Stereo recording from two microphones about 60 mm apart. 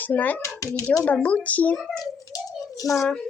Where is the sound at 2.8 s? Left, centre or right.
Left.